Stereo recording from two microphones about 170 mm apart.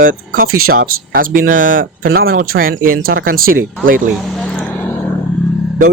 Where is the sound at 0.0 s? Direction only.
55° right (ahead or behind).